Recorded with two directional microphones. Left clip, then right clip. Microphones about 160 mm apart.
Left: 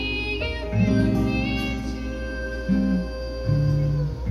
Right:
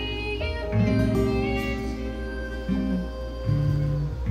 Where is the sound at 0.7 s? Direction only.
10° right (ahead or behind).